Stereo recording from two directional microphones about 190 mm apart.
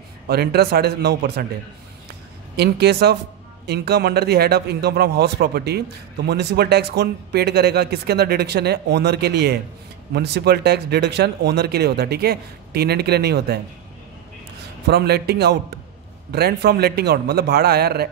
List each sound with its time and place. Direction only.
0.3 s a man's voice: 55° right (ahead or behind)
2.5 s a man's voice: 60° right (ahead or behind)
14.9 s a man's voice: 60° right (ahead or behind)